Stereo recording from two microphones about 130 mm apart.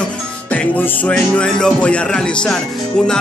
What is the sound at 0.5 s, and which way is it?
Speech, 10° left (ahead or behind).